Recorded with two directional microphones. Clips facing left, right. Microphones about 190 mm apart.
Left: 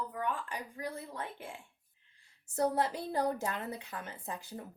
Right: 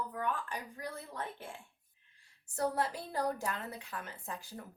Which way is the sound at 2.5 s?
25° left (ahead or behind).